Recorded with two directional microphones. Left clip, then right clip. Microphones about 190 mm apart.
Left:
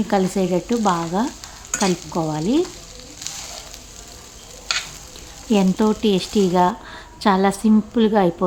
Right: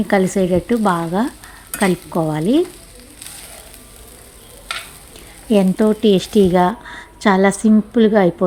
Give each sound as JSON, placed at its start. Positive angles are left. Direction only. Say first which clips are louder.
{"t": 0.1, "sound": "speech", "louder": "right 4 dB", "side_deg": -15}
{"t": 5.5, "sound": "speech", "louder": "right 4 dB", "side_deg": -10}